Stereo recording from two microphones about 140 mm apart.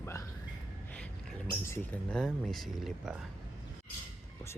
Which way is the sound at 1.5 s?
20° left (ahead or behind).